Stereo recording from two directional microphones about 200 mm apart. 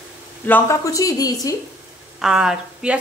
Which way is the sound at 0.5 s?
15° left (ahead or behind).